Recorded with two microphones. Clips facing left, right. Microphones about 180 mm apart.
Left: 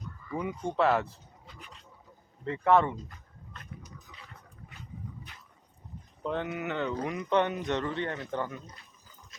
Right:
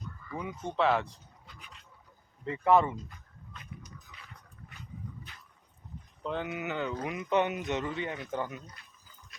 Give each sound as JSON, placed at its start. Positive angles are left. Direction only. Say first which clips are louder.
{"t": 0.3, "sound": "speech", "louder": "left 3 dB", "side_deg": 10}
{"t": 2.4, "sound": "speech", "louder": "left 1 dB", "side_deg": -5}
{"t": 4.1, "sound": "a sound", "louder": "left 2 dB", "side_deg": 30}
{"t": 6.2, "sound": "speech", "louder": "left 2 dB", "side_deg": 0}